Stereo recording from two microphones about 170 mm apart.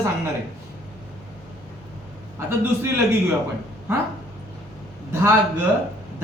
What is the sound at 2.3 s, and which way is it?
Speech, 15° right (ahead or behind).